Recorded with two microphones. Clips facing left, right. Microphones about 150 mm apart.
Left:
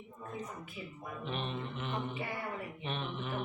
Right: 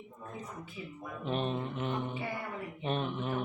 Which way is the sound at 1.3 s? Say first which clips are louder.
Right 6 dB; 40° right (ahead or behind).